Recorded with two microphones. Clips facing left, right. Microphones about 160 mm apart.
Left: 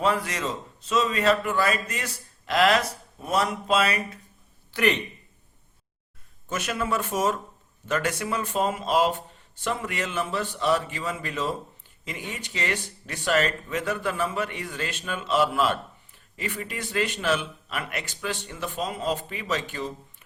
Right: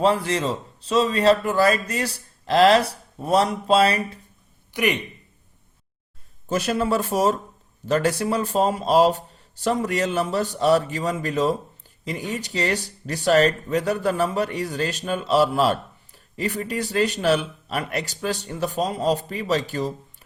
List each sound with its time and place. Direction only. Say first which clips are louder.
0.0 s speech: right 5 dB; 30° right (ahead or behind)
4.7 s speech: right 1 dB; 10° right (ahead or behind)
6.5 s speech: right 6 dB; 35° right (ahead or behind)